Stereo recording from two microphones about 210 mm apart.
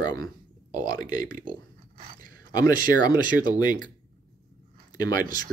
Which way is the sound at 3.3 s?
20° left (ahead or behind).